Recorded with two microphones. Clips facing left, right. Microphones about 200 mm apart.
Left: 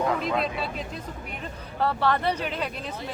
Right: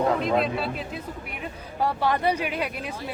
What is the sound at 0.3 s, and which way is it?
Speech, centre (ahead or behind).